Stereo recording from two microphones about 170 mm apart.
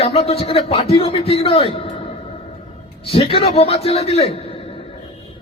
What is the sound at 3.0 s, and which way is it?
A man's voice, 35° left (ahead or behind).